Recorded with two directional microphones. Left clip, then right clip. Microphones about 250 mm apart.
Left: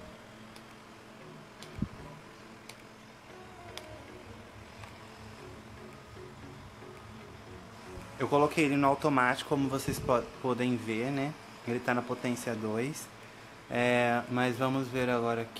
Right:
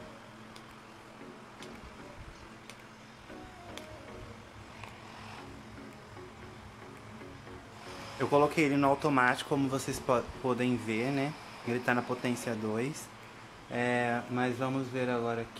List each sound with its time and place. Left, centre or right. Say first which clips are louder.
8.2 s speech: even; centre